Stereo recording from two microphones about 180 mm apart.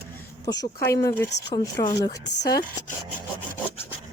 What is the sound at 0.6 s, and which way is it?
A woman's voice, 15° left (ahead or behind).